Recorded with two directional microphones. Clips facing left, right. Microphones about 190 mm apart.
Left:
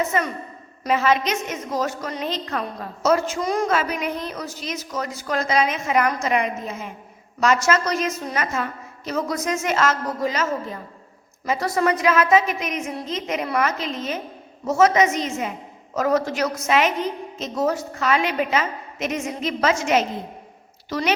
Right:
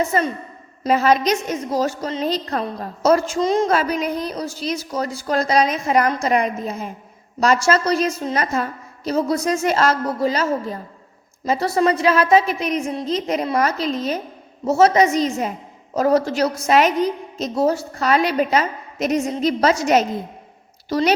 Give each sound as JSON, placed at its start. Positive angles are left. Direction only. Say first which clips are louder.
{"t": 0.1, "sound": "a woman's voice", "louder": "right 3 dB", "side_deg": -35}
{"t": 2.2, "sound": "a woman's voice", "louder": "right 5 dB", "side_deg": -35}
{"t": 3.7, "sound": "a woman's voice", "louder": "right 3 dB", "side_deg": -35}